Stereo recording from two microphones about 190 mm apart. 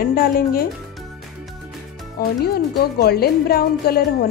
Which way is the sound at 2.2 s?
55° left (ahead or behind).